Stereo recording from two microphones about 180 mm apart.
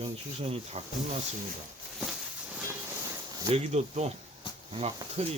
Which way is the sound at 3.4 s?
35° right (ahead or behind).